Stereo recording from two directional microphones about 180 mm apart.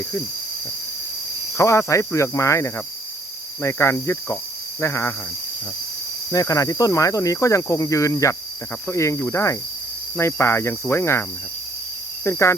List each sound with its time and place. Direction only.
1.5 s cricket: 15° left (ahead or behind)
6.3 s cricket: 20° left (ahead or behind)